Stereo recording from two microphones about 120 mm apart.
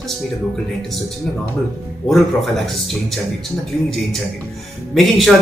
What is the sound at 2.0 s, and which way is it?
Speech, centre (ahead or behind).